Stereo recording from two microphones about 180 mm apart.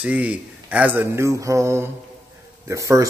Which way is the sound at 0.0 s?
5° right (ahead or behind).